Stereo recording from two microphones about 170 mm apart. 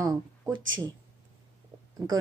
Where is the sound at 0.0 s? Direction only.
20° right (ahead or behind).